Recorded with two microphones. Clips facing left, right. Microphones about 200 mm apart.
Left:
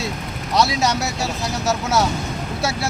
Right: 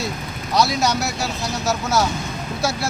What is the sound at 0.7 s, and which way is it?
Speech, centre (ahead or behind).